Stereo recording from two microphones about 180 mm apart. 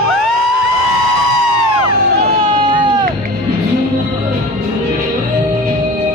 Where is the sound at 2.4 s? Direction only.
30° right (ahead or behind).